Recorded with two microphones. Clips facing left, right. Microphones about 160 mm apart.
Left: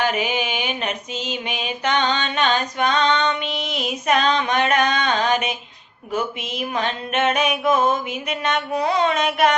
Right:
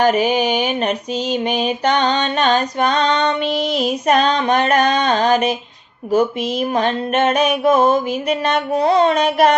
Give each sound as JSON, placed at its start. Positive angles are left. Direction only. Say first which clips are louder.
{"t": 0.0, "sound": "mantra", "louder": "right 7 dB", "side_deg": -40}